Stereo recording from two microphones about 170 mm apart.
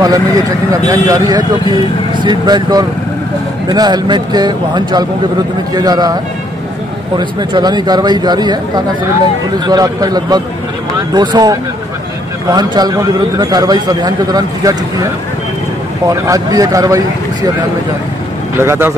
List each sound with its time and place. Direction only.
0.0 s a man's voice: 20° right (ahead or behind)
7.2 s a man's voice: 25° right (ahead or behind)
16.1 s a man's voice: 20° right (ahead or behind)
18.6 s speech: 15° right (ahead or behind)